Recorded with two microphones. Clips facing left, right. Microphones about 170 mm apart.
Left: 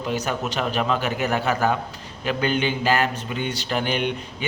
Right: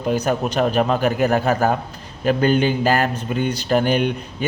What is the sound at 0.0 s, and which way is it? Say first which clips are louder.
A man's voice: right 6 dB; 45° right (ahead or behind).